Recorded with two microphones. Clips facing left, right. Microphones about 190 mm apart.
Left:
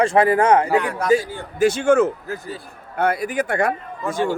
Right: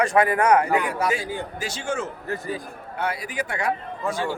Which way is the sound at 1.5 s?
55° left (ahead or behind).